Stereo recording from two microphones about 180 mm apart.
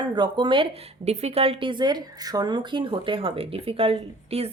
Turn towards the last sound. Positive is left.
turn(degrees=-35)  # may be behind; listen again after turning